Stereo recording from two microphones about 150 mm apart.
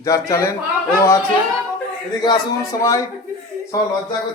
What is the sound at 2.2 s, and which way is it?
Speech, 25° left (ahead or behind).